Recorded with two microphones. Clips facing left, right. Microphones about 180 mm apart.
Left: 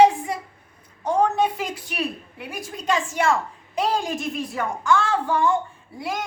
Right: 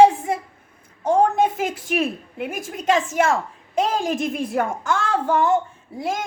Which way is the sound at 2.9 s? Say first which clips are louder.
Right 3 dB; 45° right (ahead or behind).